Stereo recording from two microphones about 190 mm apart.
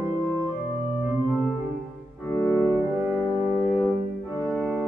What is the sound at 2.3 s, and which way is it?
Music, 10° left (ahead or behind).